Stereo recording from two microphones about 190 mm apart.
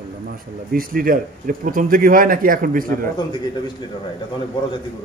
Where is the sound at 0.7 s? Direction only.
50° right (ahead or behind).